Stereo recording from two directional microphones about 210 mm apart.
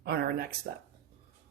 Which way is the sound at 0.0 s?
50° right (ahead or behind).